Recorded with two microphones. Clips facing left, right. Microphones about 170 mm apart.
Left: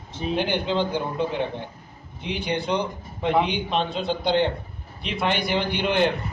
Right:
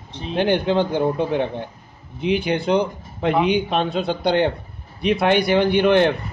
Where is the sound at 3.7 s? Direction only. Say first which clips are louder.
Right 4 dB; 50° right (ahead or behind).